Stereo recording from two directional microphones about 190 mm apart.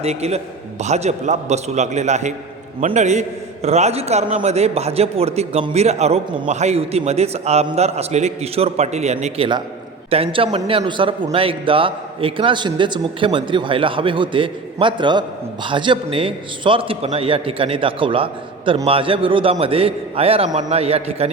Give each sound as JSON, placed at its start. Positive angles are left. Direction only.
{"t": 0.0, "sound": "a man's voice", "side_deg": -35}